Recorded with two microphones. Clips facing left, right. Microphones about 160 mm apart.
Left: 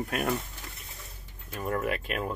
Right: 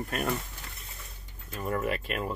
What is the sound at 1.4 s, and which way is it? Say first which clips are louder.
Speech: even; centre (ahead or behind).